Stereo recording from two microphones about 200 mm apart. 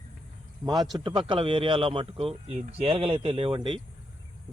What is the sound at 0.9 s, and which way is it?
Speech, 25° right (ahead or behind).